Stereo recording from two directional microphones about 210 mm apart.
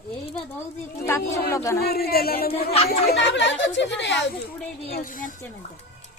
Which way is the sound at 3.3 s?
60° left (ahead or behind).